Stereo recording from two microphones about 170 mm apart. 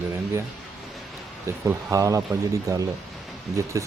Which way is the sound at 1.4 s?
15° right (ahead or behind).